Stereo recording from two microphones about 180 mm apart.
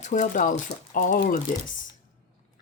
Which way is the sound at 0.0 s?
45° left (ahead or behind).